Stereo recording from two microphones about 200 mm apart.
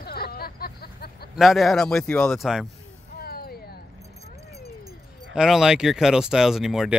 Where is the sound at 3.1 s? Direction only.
50° left (ahead or behind).